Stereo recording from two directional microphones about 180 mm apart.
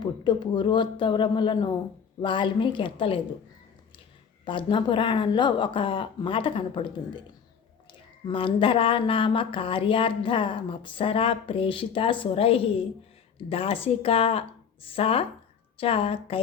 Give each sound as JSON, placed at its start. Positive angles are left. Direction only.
{"t": 0.0, "sound": "speech", "side_deg": 25}
{"t": 4.4, "sound": "a woman's voice", "side_deg": 25}